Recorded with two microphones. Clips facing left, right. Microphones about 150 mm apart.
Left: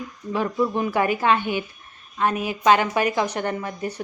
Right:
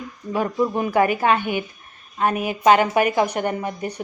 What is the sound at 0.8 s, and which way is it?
Speech, 45° right (ahead or behind).